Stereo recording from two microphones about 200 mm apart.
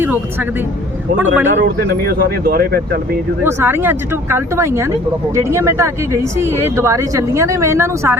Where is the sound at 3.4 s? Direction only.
10° right (ahead or behind).